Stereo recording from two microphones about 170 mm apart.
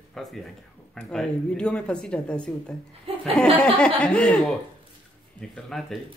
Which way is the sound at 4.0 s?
5° left (ahead or behind).